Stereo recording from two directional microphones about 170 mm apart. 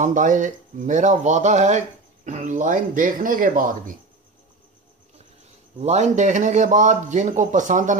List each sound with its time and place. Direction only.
0.0 s speech: 50° right (ahead or behind)
5.8 s speech: 40° right (ahead or behind)